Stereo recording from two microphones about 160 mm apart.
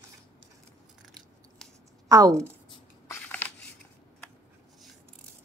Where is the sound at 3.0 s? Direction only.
10° left (ahead or behind).